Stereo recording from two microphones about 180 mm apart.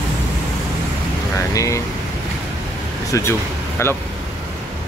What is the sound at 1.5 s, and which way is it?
Speech, 20° left (ahead or behind).